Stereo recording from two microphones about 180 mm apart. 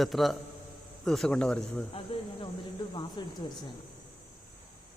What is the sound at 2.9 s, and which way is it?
Speech, 25° left (ahead or behind).